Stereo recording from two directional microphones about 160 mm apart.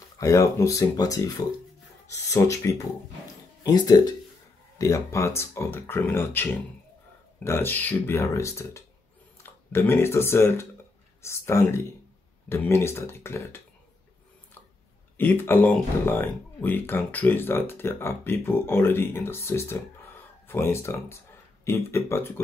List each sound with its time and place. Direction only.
0.2 s speech: 20° left (ahead or behind)
15.1 s speech: 15° left (ahead or behind)